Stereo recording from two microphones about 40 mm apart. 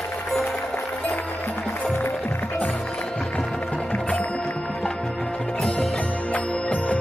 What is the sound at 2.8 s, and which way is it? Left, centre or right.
Music, left.